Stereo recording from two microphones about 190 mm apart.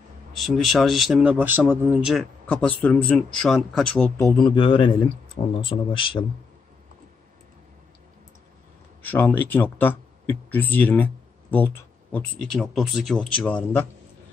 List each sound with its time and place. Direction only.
0.3 s speech: centre (ahead or behind)
2.8 s speech: 5° left (ahead or behind)
4.2 s speech: 20° left (ahead or behind)
9.0 s speech: 10° left (ahead or behind)